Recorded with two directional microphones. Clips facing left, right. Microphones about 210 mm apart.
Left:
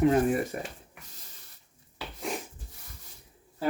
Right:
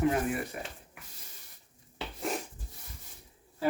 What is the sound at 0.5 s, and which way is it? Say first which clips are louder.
Speech: left 5 dB; 40° left (ahead or behind).